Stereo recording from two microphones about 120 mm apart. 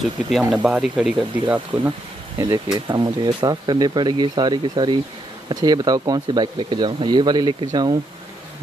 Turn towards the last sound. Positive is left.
turn(degrees=-35)  # may be behind; listen again after turning